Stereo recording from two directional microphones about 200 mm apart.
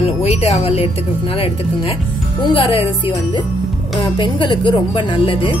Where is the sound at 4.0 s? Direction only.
25° left (ahead or behind).